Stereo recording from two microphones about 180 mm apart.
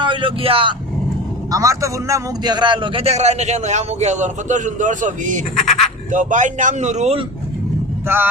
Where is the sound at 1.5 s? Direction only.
15° right (ahead or behind); by 7.2 s 40° right (ahead or behind).